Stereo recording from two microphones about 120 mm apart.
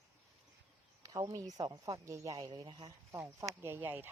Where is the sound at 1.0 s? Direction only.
30° right (ahead or behind).